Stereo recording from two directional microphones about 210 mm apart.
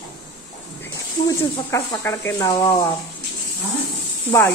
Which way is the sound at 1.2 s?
15° left (ahead or behind).